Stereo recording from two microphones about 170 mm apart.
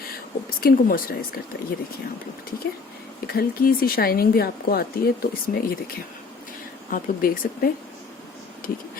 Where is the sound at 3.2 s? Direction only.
60° left (ahead or behind).